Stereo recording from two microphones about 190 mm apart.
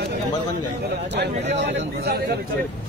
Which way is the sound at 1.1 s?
65° right (ahead or behind).